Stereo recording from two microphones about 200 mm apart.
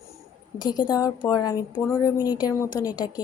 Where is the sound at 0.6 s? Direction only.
20° left (ahead or behind).